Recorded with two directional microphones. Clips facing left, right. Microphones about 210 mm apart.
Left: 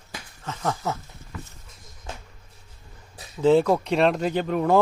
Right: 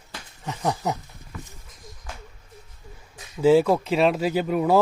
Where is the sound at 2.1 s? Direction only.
25° left (ahead or behind).